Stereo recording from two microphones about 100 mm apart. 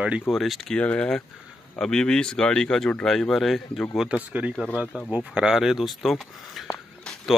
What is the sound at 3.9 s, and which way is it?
Speech, 10° right (ahead or behind).